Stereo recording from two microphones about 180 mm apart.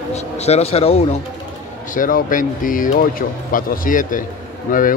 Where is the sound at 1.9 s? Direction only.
50° left (ahead or behind).